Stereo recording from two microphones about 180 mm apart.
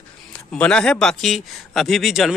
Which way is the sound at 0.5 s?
5° left (ahead or behind).